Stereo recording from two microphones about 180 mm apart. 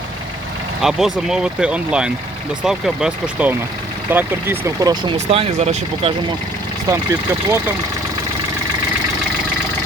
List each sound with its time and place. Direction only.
0.8 s speech: centre (ahead or behind); by 5.1 s 20° right (ahead or behind)
5.1 s speech: 35° right (ahead or behind)
6.9 s speech: 15° right (ahead or behind)